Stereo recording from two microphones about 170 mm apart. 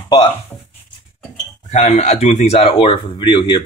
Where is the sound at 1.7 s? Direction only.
45° left (ahead or behind); by 3.7 s 25° left (ahead or behind).